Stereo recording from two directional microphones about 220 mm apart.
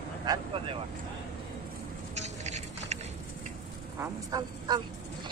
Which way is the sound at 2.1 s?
30° right (ahead or behind).